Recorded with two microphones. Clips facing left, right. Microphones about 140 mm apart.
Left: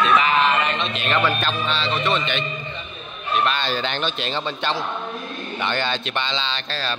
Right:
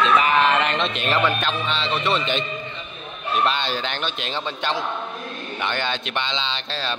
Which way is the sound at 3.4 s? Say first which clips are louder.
Even; 20° right (ahead or behind).